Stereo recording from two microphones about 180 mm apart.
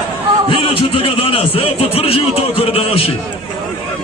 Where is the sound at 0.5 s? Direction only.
30° left (ahead or behind).